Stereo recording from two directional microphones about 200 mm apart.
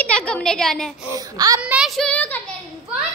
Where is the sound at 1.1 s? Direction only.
15° right (ahead or behind).